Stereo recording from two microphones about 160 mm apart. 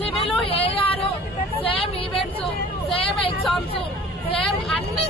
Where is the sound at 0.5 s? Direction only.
35° left (ahead or behind).